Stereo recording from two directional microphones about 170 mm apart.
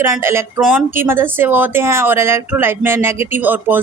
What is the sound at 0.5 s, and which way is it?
Speech, centre (ahead or behind).